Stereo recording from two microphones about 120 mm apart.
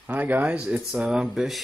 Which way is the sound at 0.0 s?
15° right (ahead or behind).